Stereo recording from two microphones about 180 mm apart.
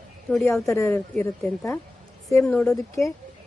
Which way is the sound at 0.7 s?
10° left (ahead or behind).